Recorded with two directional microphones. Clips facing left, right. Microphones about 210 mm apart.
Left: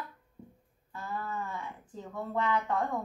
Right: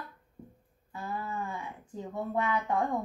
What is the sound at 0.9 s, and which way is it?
Speech, 15° right (ahead or behind).